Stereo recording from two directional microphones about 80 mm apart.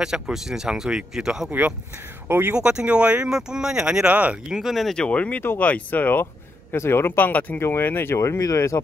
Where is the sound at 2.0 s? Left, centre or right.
Right.